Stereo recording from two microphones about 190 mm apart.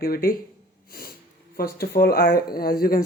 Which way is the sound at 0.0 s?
55° left (ahead or behind).